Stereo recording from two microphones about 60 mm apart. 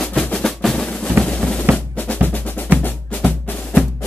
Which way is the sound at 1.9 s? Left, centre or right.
Left.